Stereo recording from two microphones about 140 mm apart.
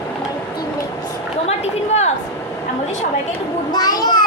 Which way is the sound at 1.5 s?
50° left (ahead or behind).